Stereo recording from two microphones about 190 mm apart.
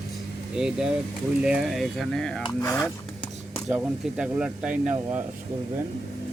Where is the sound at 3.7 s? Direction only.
5° right (ahead or behind).